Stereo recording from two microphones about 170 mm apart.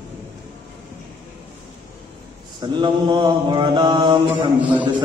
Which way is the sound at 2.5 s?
25° right (ahead or behind).